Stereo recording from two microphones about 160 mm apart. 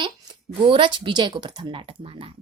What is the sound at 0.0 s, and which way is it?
Speech, 30° right (ahead or behind).